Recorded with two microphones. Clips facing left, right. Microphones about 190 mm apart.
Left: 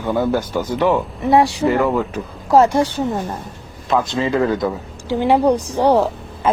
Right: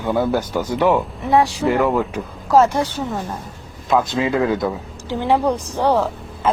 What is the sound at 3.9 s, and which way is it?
Speech, 5° right (ahead or behind).